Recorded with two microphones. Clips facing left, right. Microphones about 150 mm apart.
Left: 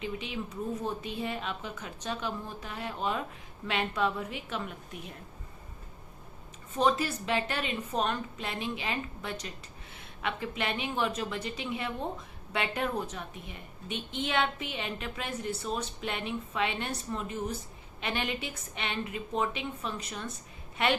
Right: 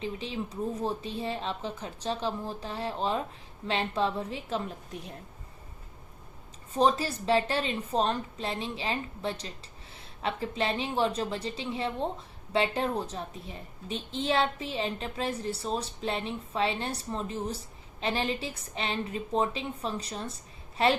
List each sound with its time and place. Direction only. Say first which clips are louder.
0.0 s a sound: right 2 dB; 35° right (ahead or behind)
0.8 s a woman's voice: right 2 dB; 30° right (ahead or behind)
6.7 s a woman's voice: right 2 dB; 35° right (ahead or behind)